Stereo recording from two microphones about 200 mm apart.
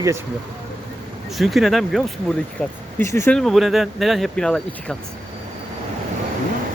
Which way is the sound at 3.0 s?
15° left (ahead or behind).